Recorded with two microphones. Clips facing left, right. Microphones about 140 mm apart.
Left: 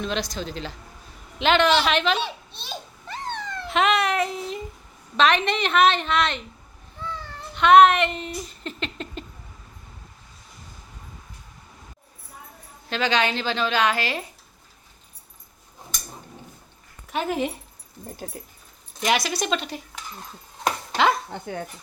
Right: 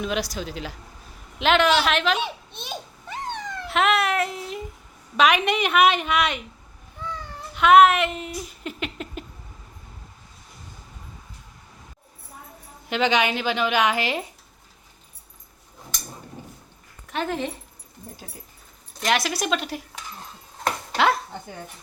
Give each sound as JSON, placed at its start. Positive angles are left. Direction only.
{"t": 0.0, "sound": "a woman's voice", "side_deg": -5}
{"t": 2.1, "sound": "babbling", "side_deg": -15}
{"t": 3.7, "sound": "baby cry", "side_deg": 0}
{"t": 5.1, "sound": "a woman's voice", "side_deg": -10}
{"t": 7.0, "sound": "cat", "side_deg": -15}
{"t": 12.9, "sound": "a woman's voice", "side_deg": -15}
{"t": 17.1, "sound": "speech", "side_deg": 10}
{"t": 19.0, "sound": "speech", "side_deg": 0}
{"t": 20.9, "sound": "dishes", "side_deg": 0}